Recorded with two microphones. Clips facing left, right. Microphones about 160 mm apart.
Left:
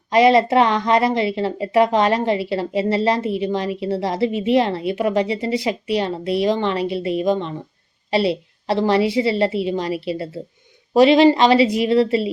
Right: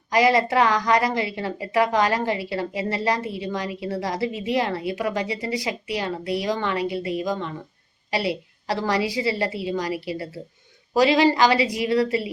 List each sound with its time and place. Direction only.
0.1 s a woman's voice: 25° left (ahead or behind)